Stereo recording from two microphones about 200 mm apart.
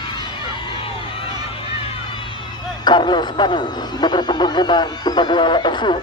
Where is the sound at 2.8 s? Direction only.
20° left (ahead or behind).